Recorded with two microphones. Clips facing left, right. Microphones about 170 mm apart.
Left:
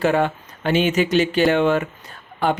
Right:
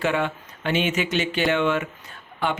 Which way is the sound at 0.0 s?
40° left (ahead or behind).